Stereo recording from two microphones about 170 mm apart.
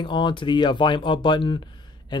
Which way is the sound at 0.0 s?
30° left (ahead or behind).